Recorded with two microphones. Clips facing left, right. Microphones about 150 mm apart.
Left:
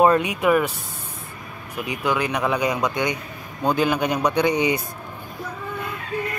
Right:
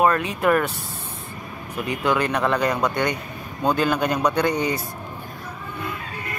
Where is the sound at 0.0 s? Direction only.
20° left (ahead or behind).